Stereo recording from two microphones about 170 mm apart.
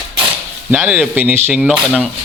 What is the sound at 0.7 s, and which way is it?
Speech, 10° right (ahead or behind).